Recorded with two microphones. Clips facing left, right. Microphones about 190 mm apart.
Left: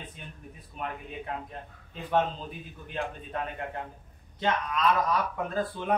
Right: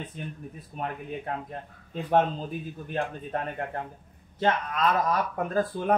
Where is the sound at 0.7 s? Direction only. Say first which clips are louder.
Right 3 dB; 45° right (ahead or behind).